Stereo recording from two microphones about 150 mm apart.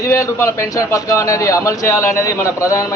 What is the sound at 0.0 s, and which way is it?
A man's voice, 20° left (ahead or behind).